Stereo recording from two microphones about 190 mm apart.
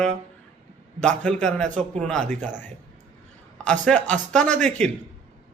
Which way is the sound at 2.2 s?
40° right (ahead or behind).